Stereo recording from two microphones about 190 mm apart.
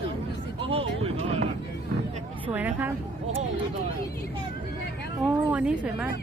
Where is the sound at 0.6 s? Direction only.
30° right (ahead or behind).